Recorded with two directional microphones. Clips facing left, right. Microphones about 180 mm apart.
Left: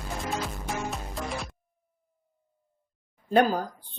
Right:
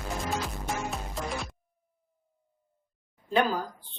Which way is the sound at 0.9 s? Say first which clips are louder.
Even; centre (ahead or behind).